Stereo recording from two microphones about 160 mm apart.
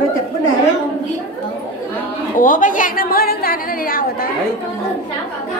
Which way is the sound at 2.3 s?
55° left (ahead or behind).